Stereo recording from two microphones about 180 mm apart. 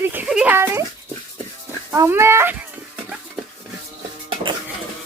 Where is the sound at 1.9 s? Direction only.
15° right (ahead or behind).